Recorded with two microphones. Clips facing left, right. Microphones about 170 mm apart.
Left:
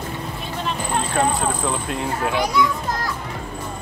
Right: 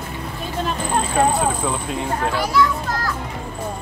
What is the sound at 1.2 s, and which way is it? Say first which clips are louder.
Speech: right 3 dB; centre (ahead or behind).